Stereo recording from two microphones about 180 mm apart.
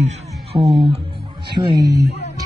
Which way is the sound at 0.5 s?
Centre (ahead or behind).